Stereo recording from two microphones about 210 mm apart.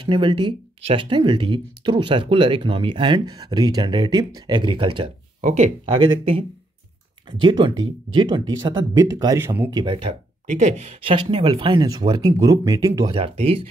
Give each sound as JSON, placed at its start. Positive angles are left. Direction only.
{"t": 0.0, "sound": "speech", "side_deg": -20}
{"t": 7.4, "sound": "speech", "side_deg": -25}
{"t": 10.4, "sound": "speech", "side_deg": -35}